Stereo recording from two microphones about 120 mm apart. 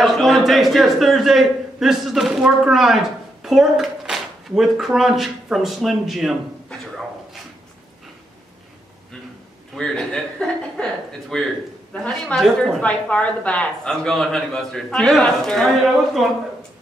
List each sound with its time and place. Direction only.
0.0 s speech: centre (ahead or behind)
9.8 s speech: 5° left (ahead or behind)
12.8 s speech: 10° left (ahead or behind)